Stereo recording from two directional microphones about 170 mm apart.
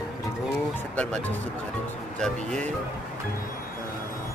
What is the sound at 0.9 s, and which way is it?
Speech, 5° left (ahead or behind).